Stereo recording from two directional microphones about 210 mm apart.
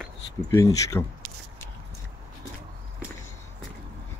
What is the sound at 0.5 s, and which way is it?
Speech, 15° left (ahead or behind).